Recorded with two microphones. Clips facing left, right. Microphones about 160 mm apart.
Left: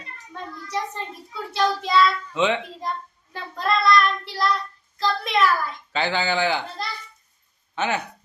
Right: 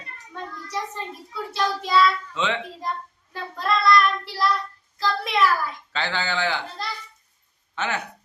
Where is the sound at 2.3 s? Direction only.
15° left (ahead or behind).